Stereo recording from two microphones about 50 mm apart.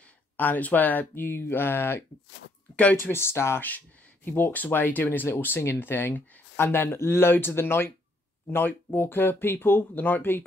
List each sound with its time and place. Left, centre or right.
0.4 s speech: left
2.7 s speech: left
3.0 s speech: left
3.6 s speech: left